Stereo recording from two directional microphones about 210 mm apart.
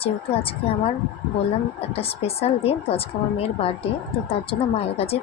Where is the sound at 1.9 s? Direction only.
30° left (ahead or behind).